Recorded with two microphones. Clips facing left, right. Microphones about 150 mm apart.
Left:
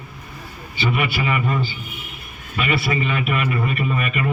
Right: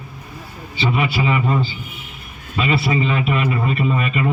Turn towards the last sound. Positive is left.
turn(degrees=-25)  # may be behind; listen again after turning